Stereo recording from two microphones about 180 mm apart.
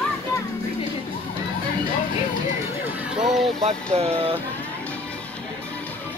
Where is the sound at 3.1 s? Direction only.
Centre (ahead or behind).